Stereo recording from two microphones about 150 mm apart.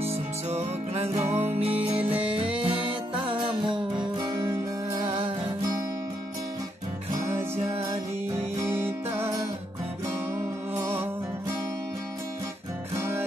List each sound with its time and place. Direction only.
0.0 s music: 45° right (ahead or behind); by 5.0 s 20° right (ahead or behind)
5.0 s music: 40° right (ahead or behind)
7.5 s music: 45° right (ahead or behind)
8.5 s music: 15° right (ahead or behind)
10.7 s music: 20° right (ahead or behind)
12.9 s music: 15° right (ahead or behind)